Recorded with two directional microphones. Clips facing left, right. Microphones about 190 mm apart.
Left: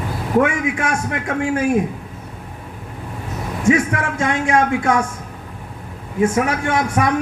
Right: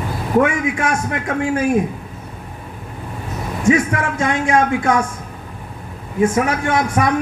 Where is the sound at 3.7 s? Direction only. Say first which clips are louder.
Right 1 dB; 35° right (ahead or behind).